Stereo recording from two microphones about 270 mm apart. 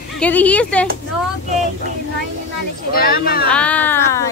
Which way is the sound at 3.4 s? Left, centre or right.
Centre.